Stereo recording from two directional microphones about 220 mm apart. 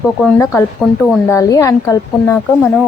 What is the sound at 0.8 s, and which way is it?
Speech, centre (ahead or behind).